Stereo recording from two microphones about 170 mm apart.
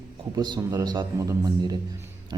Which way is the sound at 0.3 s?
25° right (ahead or behind).